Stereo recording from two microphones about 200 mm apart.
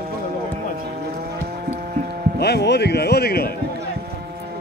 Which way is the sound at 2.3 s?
55° left (ahead or behind).